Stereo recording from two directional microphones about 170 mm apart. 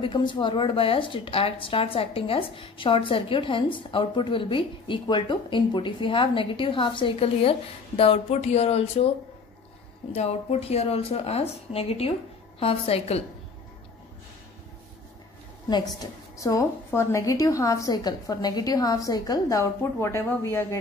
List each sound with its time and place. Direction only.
0.0 s speech: 30° left (ahead or behind)
10.1 s speech: 40° left (ahead or behind)
16.0 s a woman's voice: 20° left (ahead or behind)